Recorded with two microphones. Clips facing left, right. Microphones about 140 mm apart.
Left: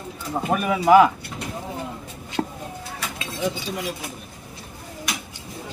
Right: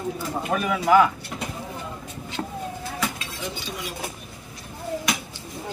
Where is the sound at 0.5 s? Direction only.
10° left (ahead or behind).